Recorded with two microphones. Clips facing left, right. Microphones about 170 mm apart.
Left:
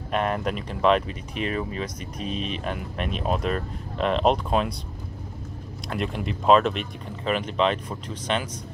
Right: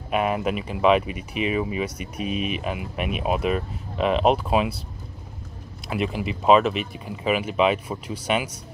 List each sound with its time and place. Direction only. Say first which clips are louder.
0.1 s speech: right 2 dB; 5° right (ahead or behind)
5.9 s speech: right 3 dB; 5° right (ahead or behind)